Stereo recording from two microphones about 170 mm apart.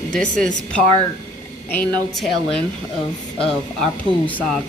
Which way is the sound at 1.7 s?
5° left (ahead or behind).